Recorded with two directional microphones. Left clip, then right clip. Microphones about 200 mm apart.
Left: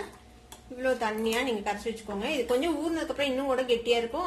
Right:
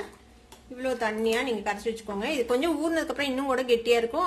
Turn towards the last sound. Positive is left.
turn(degrees=-30)  # may be behind; listen again after turning